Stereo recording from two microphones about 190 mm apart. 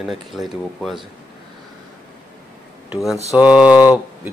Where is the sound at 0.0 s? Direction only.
Centre (ahead or behind).